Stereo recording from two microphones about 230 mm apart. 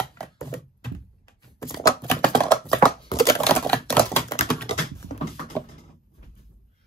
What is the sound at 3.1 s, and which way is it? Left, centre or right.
Crumpling, centre.